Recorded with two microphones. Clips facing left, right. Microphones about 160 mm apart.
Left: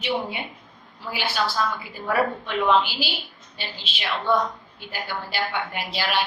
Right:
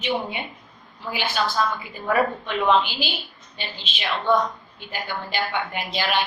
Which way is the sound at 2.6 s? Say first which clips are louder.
Right 1 dB; 20° right (ahead or behind).